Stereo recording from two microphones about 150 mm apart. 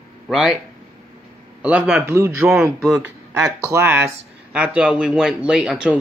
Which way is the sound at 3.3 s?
20° right (ahead or behind).